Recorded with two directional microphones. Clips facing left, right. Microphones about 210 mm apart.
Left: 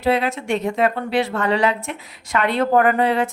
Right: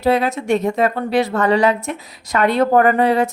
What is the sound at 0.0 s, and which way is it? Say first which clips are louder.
A woman's voice: right 3 dB; 40° right (ahead or behind).